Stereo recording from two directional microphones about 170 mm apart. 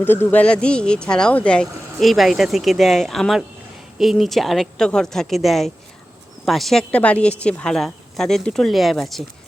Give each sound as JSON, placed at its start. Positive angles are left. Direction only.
{"t": 0.0, "sound": "speech", "side_deg": 10}